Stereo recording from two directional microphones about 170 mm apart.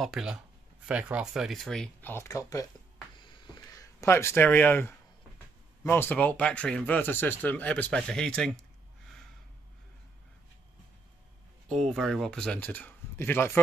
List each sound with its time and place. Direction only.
0.0 s speech: centre (ahead or behind); by 2.6 s 15° left (ahead or behind)
3.2 s a sound: 25° left (ahead or behind); by 4.9 s 10° left (ahead or behind)
5.9 s speech: 10° left (ahead or behind)
11.7 s speech: centre (ahead or behind)